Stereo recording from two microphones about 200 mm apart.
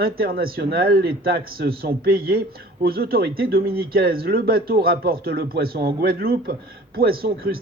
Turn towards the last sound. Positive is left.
turn(degrees=-50)  # may be behind; listen again after turning